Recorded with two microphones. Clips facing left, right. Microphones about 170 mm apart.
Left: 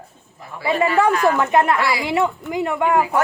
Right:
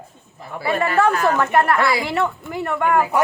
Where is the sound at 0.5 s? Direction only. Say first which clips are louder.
Even; 60° right (ahead or behind).